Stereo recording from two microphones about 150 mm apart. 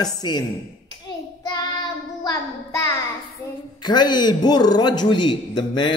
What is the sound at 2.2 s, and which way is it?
Child singing, 20° left (ahead or behind).